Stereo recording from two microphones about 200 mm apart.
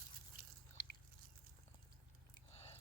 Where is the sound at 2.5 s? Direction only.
30° left (ahead or behind).